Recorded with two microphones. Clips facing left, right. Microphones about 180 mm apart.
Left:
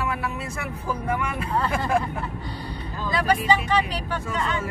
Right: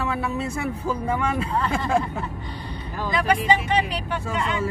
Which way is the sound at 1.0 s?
30° right (ahead or behind).